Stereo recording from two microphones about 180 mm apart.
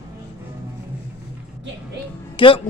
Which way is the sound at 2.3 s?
30° left (ahead or behind).